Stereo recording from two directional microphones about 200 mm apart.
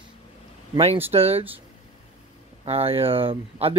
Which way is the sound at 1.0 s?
30° right (ahead or behind).